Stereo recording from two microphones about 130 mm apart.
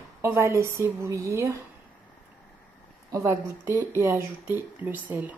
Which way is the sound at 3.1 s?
25° right (ahead or behind).